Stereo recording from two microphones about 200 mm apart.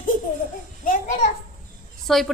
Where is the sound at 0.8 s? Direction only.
40° left (ahead or behind).